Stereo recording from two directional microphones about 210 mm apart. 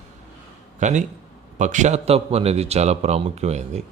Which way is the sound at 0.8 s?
35° right (ahead or behind).